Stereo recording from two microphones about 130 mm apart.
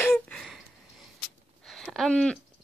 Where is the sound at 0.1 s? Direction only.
Centre (ahead or behind).